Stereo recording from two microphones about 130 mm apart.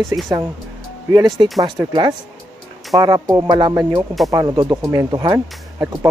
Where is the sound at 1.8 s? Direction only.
30° right (ahead or behind).